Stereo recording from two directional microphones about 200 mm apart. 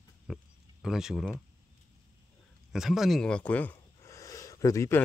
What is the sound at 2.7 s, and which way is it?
Speech, centre (ahead or behind).